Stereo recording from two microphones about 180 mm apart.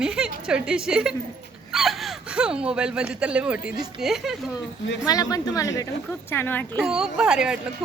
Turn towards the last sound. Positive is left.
turn(degrees=-5)  # may be behind; listen again after turning